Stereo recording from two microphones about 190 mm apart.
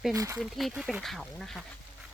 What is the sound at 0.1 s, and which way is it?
Speech, 15° right (ahead or behind).